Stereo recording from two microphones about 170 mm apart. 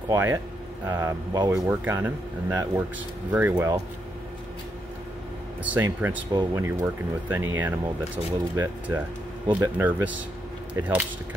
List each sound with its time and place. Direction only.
0.1 s speech: 15° right (ahead or behind)
5.6 s speech: 10° right (ahead or behind)